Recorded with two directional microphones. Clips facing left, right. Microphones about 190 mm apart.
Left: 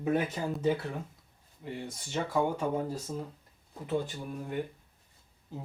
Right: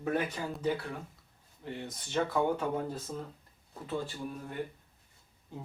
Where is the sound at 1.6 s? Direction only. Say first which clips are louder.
Left 1 dB; 10° left (ahead or behind).